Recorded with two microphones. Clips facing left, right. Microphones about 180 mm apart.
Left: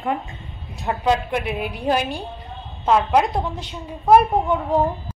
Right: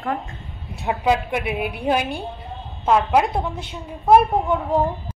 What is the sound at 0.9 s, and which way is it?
A woman's voice, 10° right (ahead or behind).